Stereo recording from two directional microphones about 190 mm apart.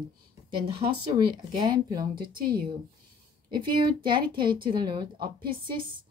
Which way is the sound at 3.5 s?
25° right (ahead or behind).